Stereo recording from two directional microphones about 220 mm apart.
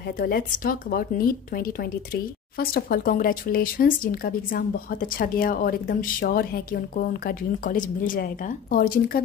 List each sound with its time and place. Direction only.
0.2 s speech: 40° left (ahead or behind)